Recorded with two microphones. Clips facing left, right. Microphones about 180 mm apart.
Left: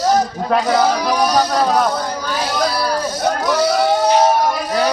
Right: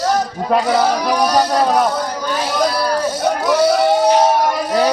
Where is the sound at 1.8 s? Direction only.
15° right (ahead or behind).